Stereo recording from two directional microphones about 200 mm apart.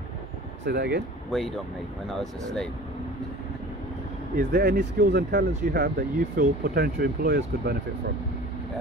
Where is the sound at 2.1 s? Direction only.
Centre (ahead or behind).